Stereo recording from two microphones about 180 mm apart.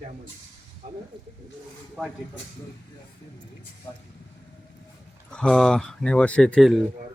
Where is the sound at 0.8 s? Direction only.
50° right (ahead or behind).